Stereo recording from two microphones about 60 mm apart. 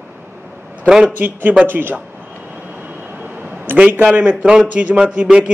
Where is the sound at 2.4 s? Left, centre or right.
Right.